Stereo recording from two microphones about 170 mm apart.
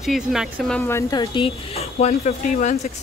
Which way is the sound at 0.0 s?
Centre (ahead or behind).